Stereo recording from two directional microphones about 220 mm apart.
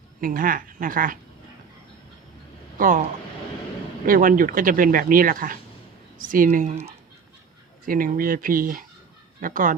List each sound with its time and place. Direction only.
0.2 s speech: 40° right (ahead or behind)
2.7 s speech: 40° right (ahead or behind)
4.0 s speech: 40° right (ahead or behind)